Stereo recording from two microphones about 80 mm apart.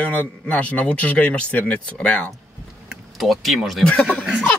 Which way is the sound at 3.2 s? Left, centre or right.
Centre.